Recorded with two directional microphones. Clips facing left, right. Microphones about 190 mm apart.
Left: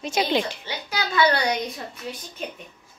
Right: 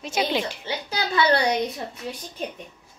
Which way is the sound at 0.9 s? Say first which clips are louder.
Even; 30° right (ahead or behind).